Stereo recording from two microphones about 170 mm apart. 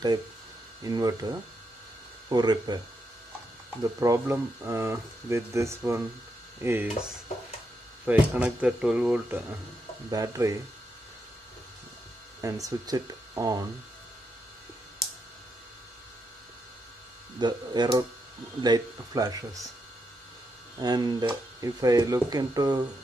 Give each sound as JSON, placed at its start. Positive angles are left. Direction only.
{"t": 0.8, "sound": "speech", "side_deg": -20}
{"t": 3.8, "sound": "speech", "side_deg": -20}
{"t": 8.0, "sound": "speech", "side_deg": -10}
{"t": 12.4, "sound": "speech", "side_deg": -20}
{"t": 17.4, "sound": "speech", "side_deg": -25}
{"t": 20.8, "sound": "speech", "side_deg": -25}